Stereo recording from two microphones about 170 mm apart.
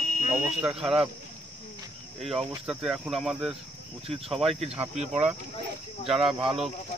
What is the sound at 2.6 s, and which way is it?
Speech, 5° right (ahead or behind).